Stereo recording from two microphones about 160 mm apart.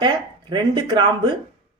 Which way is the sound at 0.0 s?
30° right (ahead or behind).